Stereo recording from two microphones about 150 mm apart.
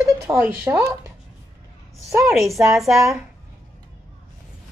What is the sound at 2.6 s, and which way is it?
Speech, centre (ahead or behind).